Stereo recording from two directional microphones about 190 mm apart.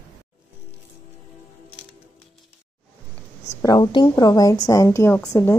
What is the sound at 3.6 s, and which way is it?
A woman's voice, 20° left (ahead or behind).